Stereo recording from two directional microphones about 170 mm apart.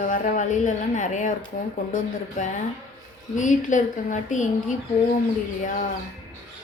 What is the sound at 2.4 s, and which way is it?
Speech, 50° left (ahead or behind).